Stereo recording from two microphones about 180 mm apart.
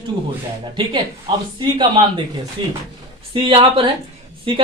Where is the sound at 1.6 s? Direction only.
25° right (ahead or behind).